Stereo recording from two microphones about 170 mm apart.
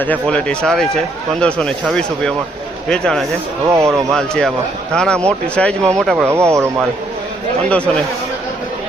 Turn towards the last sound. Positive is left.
turn(degrees=5)  # may be behind; listen again after turning